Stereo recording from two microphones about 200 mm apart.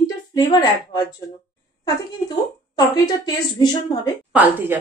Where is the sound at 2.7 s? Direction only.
20° left (ahead or behind).